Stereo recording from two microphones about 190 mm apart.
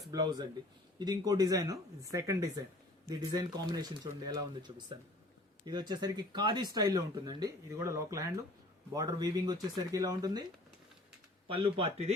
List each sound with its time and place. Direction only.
0.1 s speech: 20° right (ahead or behind)
11.4 s speech: 30° right (ahead or behind)